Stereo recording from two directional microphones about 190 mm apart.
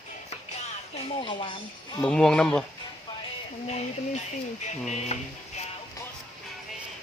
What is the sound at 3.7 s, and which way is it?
Speech, 35° left (ahead or behind).